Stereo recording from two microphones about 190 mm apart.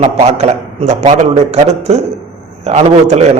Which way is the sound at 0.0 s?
35° right (ahead or behind).